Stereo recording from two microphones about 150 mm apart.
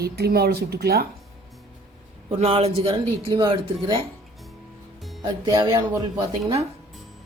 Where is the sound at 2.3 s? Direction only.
45° right (ahead or behind).